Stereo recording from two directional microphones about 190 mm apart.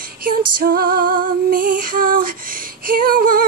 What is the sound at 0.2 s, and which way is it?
Female singing, 50° right (ahead or behind).